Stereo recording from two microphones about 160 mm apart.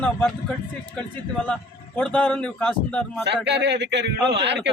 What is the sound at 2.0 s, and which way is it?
A man's voice, 5° left (ahead or behind).